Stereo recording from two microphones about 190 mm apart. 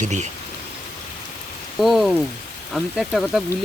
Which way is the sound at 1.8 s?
Centre (ahead or behind).